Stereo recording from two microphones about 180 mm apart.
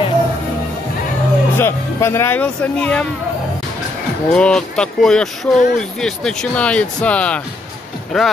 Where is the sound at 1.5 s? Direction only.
15° left (ahead or behind).